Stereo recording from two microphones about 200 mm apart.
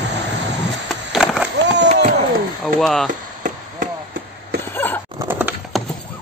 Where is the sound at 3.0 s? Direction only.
40° right (ahead or behind).